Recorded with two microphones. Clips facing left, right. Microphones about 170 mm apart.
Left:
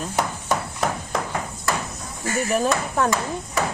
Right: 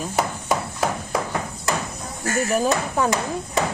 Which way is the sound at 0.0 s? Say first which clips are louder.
Right 1 dB; 5° right (ahead or behind).